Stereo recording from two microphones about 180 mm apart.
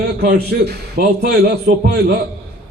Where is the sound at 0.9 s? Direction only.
60° right (ahead or behind).